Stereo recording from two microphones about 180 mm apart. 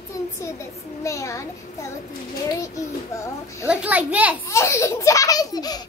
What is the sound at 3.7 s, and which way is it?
Speech, 5° right (ahead or behind).